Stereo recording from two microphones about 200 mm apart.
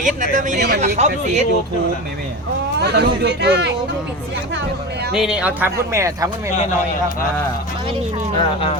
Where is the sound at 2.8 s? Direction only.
55° right (ahead or behind).